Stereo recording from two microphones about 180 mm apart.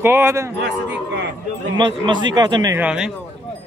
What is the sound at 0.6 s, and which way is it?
Speech, 75° right (ahead or behind).